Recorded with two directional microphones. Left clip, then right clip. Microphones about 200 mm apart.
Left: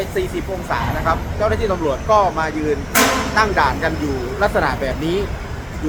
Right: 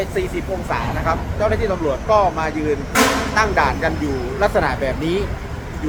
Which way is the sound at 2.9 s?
60° left (ahead or behind).